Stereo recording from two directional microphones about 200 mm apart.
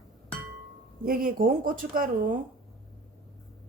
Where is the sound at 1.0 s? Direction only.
45° right (ahead or behind).